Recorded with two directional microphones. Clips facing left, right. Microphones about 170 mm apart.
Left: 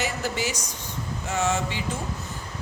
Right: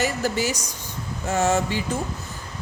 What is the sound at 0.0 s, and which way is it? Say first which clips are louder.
A man's voice: right 4 dB; 40° right (ahead or behind).